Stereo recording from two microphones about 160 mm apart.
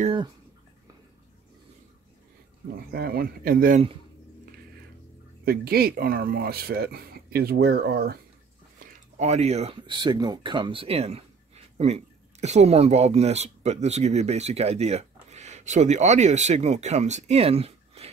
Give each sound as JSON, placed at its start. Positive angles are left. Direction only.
{"t": 2.9, "sound": "speech", "side_deg": -75}
{"t": 5.4, "sound": "speech", "side_deg": -75}
{"t": 9.2, "sound": "speech", "side_deg": -45}